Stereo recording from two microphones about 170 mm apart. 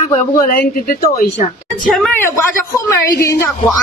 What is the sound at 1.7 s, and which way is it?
Speech, 5° left (ahead or behind).